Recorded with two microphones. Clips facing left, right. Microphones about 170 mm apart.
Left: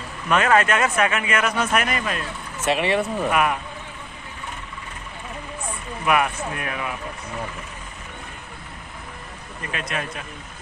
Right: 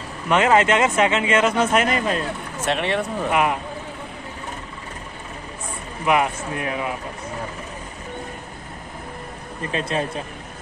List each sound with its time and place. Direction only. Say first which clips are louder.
0.3 s speech: right 2 dB; 20° right (ahead or behind)
2.6 s speech: left 2 dB; 5° left (ahead or behind)
3.3 s speech: right 2 dB; 20° right (ahead or behind)
6.0 s speech: right 1 dB; 25° right (ahead or behind)
9.6 s speech: right 5 dB; 30° right (ahead or behind)